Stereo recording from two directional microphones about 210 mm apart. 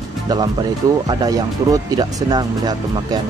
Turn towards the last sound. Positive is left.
turn(degrees=-20)  # may be behind; listen again after turning